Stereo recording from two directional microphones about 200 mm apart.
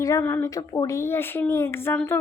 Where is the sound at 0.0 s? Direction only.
15° left (ahead or behind).